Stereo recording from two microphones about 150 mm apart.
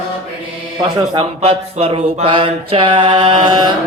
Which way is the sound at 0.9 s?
30° right (ahead or behind).